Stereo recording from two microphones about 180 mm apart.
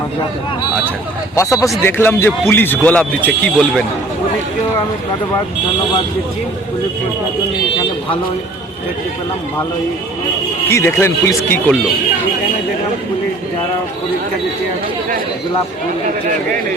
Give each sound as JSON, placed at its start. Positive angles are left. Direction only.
{"t": 1.4, "sound": "a man's voice", "side_deg": 15}
{"t": 10.7, "sound": "a man's voice", "side_deg": 15}